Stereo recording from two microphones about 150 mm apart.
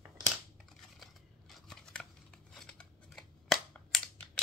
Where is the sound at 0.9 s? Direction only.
Centre (ahead or behind).